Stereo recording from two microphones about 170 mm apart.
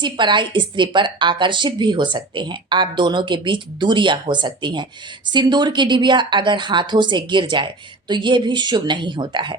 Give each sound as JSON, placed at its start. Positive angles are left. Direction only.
{"t": 0.0, "sound": "a woman's voice", "side_deg": -25}